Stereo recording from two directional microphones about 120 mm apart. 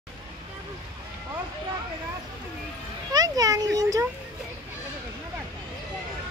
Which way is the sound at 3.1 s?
30° right (ahead or behind).